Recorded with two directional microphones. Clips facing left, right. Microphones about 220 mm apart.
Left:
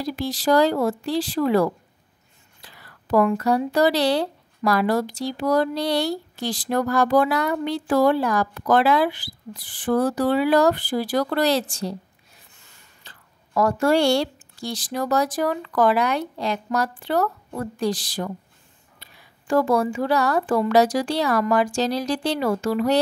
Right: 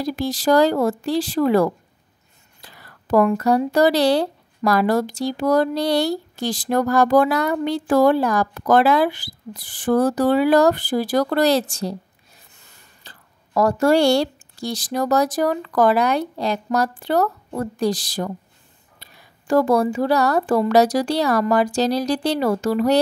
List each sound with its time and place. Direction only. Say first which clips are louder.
0.0 s speech: right 3 dB; 45° right (ahead or behind)
13.0 s speech: right 3 dB; 35° right (ahead or behind)